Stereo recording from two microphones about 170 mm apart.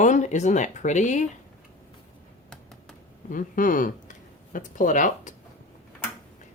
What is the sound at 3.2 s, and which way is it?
Speech, 50° left (ahead or behind).